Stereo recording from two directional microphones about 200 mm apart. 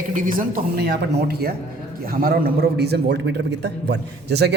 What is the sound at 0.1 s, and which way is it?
A man's voice, 40° right (ahead or behind).